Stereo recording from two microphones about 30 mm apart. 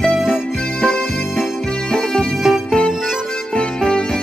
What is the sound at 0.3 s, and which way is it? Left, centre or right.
Music, left.